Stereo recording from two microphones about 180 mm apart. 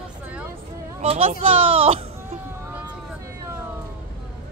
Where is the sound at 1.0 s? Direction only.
35° right (ahead or behind).